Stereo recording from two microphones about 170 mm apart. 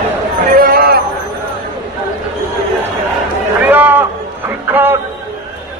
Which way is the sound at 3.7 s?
10° right (ahead or behind).